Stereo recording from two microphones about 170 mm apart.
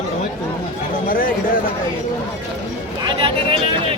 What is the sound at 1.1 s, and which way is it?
Speech, 55° left (ahead or behind).